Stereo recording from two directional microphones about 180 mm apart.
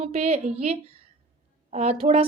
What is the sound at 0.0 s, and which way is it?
A woman's voice, 35° right (ahead or behind).